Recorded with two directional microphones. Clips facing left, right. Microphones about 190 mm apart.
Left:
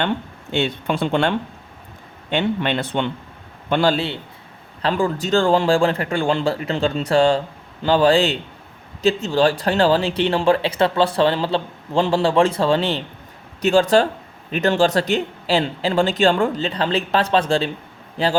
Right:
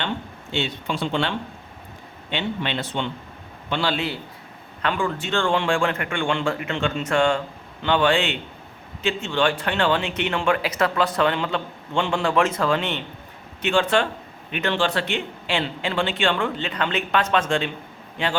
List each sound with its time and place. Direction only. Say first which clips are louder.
0.5 s speech: left 5 dB; 55° left (ahead or behind)
3.7 s speech: left 6 dB; 45° left (ahead or behind)